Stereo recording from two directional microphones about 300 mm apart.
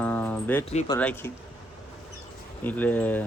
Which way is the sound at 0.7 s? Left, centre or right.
Left.